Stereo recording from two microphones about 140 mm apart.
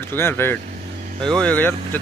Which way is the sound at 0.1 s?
15° left (ahead or behind).